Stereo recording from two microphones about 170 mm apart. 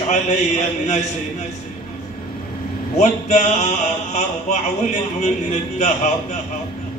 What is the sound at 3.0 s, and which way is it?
A man's voice, 45° left (ahead or behind).